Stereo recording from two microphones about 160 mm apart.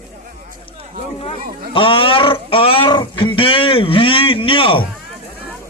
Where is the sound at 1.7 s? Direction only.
35° left (ahead or behind).